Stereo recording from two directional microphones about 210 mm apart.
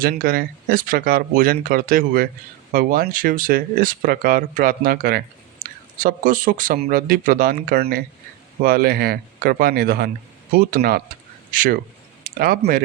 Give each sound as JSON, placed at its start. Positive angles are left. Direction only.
{"t": 0.0, "sound": "speech", "side_deg": -45}